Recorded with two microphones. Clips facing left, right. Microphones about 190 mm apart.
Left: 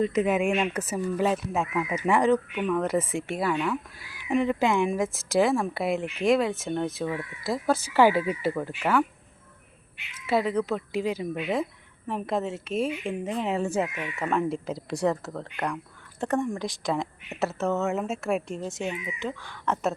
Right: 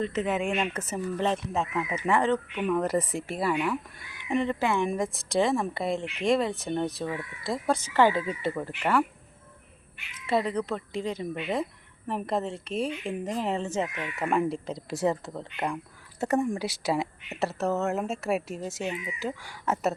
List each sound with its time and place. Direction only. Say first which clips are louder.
0.0 s speech: left 4 dB; 10° left (ahead or behind)
2.6 s speech: even; 5° right (ahead or behind)
4.3 s speech: left 3 dB; 5° left (ahead or behind)
4.6 s speech: left 3 dB; 15° left (ahead or behind)
4.9 s speech: left 2 dB; centre (ahead or behind)
10.2 s speech: left 2 dB; centre (ahead or behind)
15.4 s speech: even; 10° right (ahead or behind)